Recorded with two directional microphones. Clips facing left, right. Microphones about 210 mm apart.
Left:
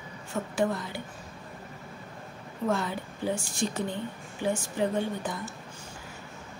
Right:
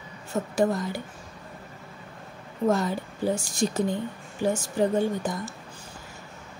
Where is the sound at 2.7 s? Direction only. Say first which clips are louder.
Right 4 dB; 40° right (ahead or behind).